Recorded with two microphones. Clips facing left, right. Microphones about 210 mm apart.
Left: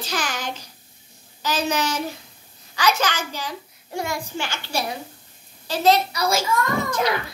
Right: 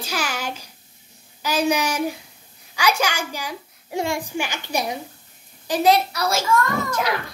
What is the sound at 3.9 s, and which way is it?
Speech, 25° right (ahead or behind).